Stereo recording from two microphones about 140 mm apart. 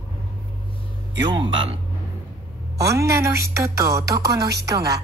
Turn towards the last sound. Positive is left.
turn(degrees=-25)  # may be behind; listen again after turning